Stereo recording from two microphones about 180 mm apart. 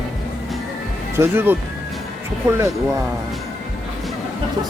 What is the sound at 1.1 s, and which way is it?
Speech, 15° right (ahead or behind).